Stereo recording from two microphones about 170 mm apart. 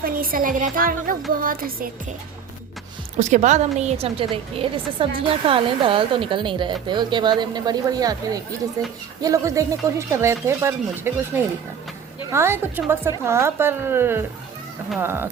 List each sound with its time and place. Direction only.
0.0 s a woman's voice: 60° right (ahead or behind)
3.2 s a woman's voice: 45° right (ahead or behind); by 15.3 s 15° right (ahead or behind)